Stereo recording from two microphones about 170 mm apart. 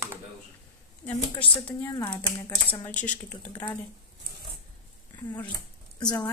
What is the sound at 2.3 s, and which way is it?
Speech, 25° left (ahead or behind).